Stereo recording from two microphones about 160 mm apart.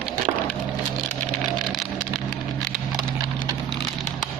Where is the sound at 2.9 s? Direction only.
25° right (ahead or behind).